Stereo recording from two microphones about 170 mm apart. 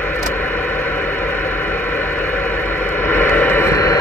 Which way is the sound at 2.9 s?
10° left (ahead or behind).